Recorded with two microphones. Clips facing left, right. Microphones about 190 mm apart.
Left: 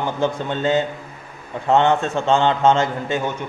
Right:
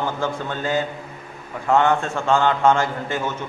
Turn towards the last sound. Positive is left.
turn(degrees=15)  # may be behind; listen again after turning